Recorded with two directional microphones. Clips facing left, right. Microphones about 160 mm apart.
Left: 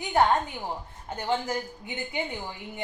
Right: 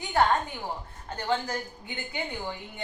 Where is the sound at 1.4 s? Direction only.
20° left (ahead or behind).